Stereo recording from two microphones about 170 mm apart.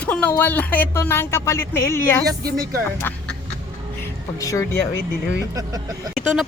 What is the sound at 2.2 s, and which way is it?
Speech, 20° right (ahead or behind).